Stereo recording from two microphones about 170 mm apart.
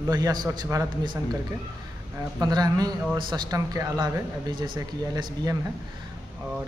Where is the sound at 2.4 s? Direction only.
25° right (ahead or behind).